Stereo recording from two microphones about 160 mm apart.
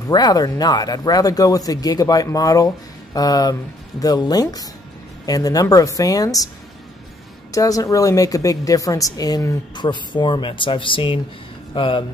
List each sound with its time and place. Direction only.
0.1 s a woman's voice: 25° left (ahead or behind)
7.5 s a woman's voice: 20° left (ahead or behind)